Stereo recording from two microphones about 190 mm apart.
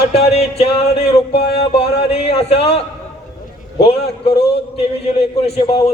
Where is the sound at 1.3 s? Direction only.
55° left (ahead or behind).